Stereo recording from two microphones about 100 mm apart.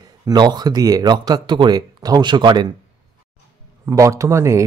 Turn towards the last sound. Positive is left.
turn(degrees=-30)  # may be behind; listen again after turning